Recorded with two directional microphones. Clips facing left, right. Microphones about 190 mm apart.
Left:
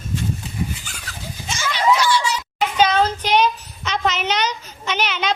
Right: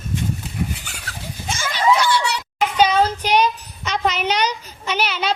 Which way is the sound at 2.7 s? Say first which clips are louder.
Right 1 dB; 10° right (ahead or behind).